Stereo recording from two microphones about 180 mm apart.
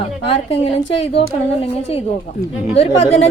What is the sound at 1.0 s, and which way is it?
A woman's voice, 30° left (ahead or behind).